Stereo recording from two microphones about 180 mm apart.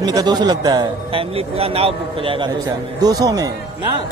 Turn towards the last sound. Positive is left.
turn(degrees=-20)  # may be behind; listen again after turning